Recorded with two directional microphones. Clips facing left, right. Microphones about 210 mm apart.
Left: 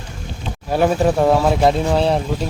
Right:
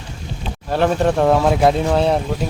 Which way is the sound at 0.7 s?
10° left (ahead or behind).